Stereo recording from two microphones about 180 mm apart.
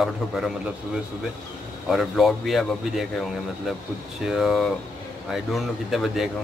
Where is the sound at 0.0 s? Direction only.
Centre (ahead or behind).